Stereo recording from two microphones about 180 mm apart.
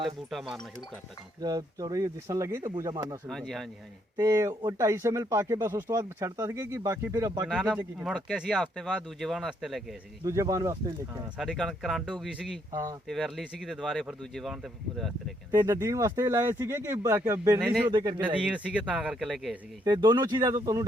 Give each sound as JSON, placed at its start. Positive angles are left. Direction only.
{"t": 0.3, "sound": "speech", "side_deg": 0}
{"t": 1.4, "sound": "speech", "side_deg": -20}
{"t": 3.2, "sound": "speech", "side_deg": 0}
{"t": 4.2, "sound": "speech", "side_deg": -15}
{"t": 8.0, "sound": "speech", "side_deg": 0}
{"t": 10.2, "sound": "speech", "side_deg": -15}
{"t": 11.3, "sound": "speech", "side_deg": 0}
{"t": 12.7, "sound": "speech", "side_deg": -20}
{"t": 13.1, "sound": "speech", "side_deg": 0}
{"t": 15.5, "sound": "speech", "side_deg": -20}
{"t": 17.6, "sound": "speech", "side_deg": -5}
{"t": 17.9, "sound": "speech", "side_deg": -25}
{"t": 18.2, "sound": "speech", "side_deg": -10}
{"t": 19.8, "sound": "speech", "side_deg": -25}